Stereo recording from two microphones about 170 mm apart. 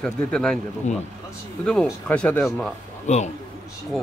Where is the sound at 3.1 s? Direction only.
45° left (ahead or behind).